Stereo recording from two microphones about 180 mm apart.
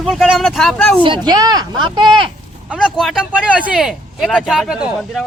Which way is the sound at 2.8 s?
Centre (ahead or behind).